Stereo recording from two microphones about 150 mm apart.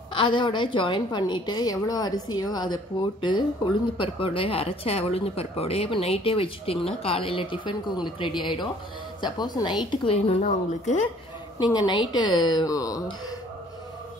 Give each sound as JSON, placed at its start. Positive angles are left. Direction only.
{"t": 0.1, "sound": "a woman's voice", "side_deg": 35}
{"t": 11.5, "sound": "a woman's voice", "side_deg": 25}